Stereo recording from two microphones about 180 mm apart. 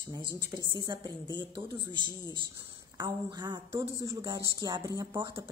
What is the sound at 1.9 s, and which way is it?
Speech, 25° left (ahead or behind).